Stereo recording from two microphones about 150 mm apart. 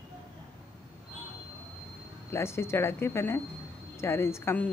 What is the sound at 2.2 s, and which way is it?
A woman's voice, 15° left (ahead or behind).